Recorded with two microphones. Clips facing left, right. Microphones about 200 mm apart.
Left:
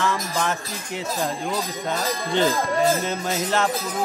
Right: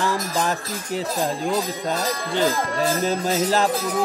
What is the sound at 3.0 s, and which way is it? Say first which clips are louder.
Speech: right 4 dB; 35° right (ahead or behind).